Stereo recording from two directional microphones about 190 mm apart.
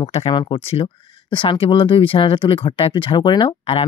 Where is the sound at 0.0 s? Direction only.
30° left (ahead or behind).